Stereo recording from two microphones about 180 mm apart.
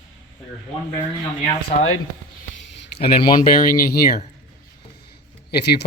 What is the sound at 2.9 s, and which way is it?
Speech, 30° left (ahead or behind).